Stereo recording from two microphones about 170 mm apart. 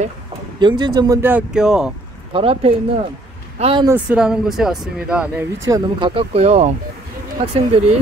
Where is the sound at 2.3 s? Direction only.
35° right (ahead or behind).